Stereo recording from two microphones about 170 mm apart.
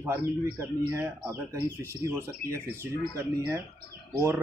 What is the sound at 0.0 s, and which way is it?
Speech, 15° right (ahead or behind).